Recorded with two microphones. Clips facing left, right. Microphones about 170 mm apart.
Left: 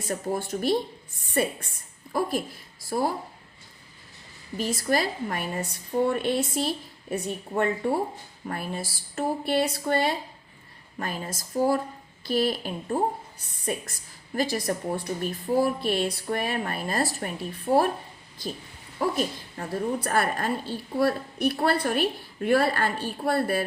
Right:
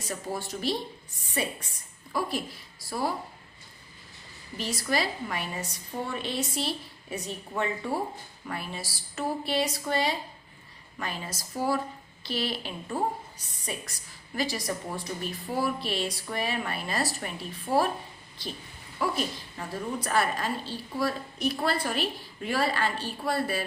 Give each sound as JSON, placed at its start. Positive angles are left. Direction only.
{"t": 0.1, "sound": "a woman's voice", "side_deg": 50}
{"t": 4.5, "sound": "a woman's voice", "side_deg": 50}
{"t": 18.9, "sound": "a woman's voice", "side_deg": 45}